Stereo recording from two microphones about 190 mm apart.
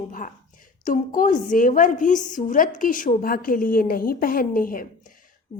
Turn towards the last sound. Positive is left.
turn(degrees=45)  # may be behind; listen again after turning